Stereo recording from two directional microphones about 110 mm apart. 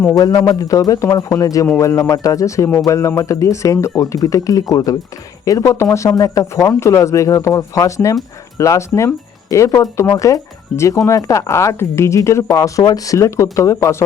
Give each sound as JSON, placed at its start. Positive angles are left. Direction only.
{"t": 0.1, "sound": "speech", "side_deg": 35}